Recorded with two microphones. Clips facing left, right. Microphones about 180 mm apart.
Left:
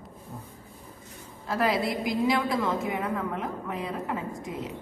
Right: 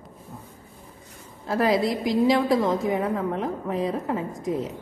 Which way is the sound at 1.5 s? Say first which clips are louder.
Right 4 dB; 35° right (ahead or behind).